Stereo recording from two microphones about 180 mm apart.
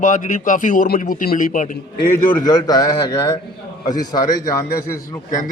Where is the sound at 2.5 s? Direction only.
20° left (ahead or behind).